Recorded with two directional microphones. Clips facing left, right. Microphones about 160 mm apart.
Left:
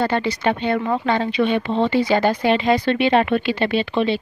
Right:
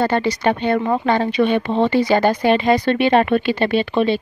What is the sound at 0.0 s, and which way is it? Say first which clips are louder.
Speech: right 2 dB; 45° right (ahead or behind).